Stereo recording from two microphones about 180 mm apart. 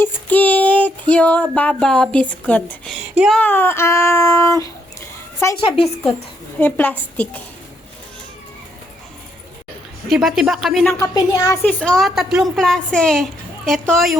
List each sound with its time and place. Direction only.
0.0 s child singing: 10° left (ahead or behind)
5.5 s a woman's voice: 30° left (ahead or behind)
6.6 s child singing: 10° left (ahead or behind)
10.1 s speech: centre (ahead or behind)
10.9 s speech: 20° left (ahead or behind); by 14.2 s centre (ahead or behind)